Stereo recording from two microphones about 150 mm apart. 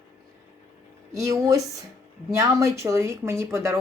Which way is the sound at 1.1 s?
20° right (ahead or behind).